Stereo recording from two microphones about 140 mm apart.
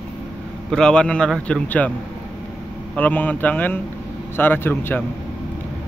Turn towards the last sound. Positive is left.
turn(degrees=15)  # may be behind; listen again after turning